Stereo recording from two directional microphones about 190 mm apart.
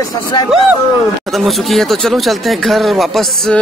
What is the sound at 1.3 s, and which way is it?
Speech, centre (ahead or behind).